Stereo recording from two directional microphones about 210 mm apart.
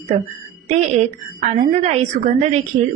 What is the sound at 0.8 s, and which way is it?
A woman's voice, 35° right (ahead or behind).